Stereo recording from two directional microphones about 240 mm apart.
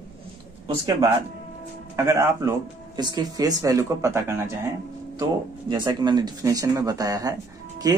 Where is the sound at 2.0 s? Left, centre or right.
Centre.